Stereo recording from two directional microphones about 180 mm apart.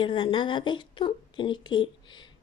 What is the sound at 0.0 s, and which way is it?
A woman's voice, 25° left (ahead or behind).